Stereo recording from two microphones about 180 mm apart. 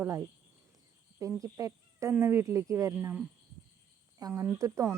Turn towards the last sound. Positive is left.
turn(degrees=-15)  # may be behind; listen again after turning